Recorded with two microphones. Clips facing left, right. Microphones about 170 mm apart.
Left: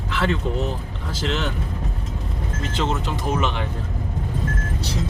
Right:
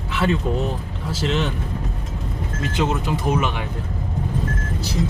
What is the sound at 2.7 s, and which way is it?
Speech, 10° right (ahead or behind).